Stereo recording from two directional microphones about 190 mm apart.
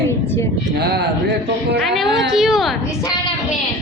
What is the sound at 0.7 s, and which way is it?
Speech, 60° right (ahead or behind).